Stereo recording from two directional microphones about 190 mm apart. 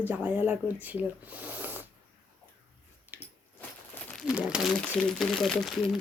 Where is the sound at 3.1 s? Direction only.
10° right (ahead or behind).